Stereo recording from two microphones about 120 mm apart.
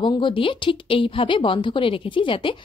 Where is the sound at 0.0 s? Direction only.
45° left (ahead or behind).